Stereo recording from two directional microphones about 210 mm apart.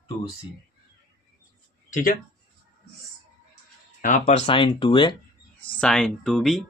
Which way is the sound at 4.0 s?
35° left (ahead or behind).